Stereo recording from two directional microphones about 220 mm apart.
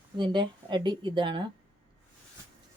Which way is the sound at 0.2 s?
20° right (ahead or behind).